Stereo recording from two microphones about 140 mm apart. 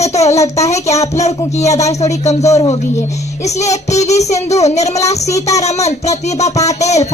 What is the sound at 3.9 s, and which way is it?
A child's voice, 50° left (ahead or behind).